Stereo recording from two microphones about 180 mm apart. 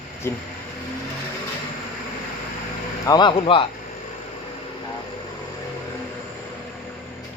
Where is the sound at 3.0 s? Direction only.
25° left (ahead or behind).